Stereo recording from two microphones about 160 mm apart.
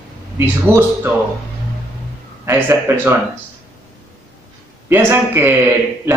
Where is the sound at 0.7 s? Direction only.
15° right (ahead or behind).